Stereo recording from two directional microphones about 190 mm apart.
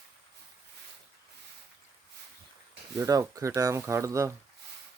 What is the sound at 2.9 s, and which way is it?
Speech, 20° right (ahead or behind).